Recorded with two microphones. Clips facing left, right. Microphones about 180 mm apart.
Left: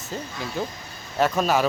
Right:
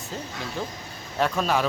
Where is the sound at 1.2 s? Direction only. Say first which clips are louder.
Left 3 dB; 5° left (ahead or behind).